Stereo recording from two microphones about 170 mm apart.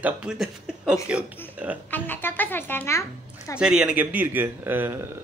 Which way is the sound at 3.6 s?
5° right (ahead or behind).